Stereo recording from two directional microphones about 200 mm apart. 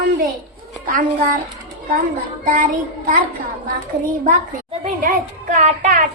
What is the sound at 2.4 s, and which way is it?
Child singing, 40° right (ahead or behind).